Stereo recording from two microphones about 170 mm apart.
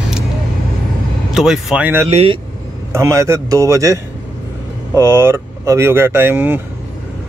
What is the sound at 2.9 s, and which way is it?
Speech, 15° right (ahead or behind).